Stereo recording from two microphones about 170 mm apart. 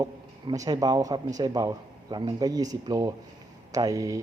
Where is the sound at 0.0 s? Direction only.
20° right (ahead or behind).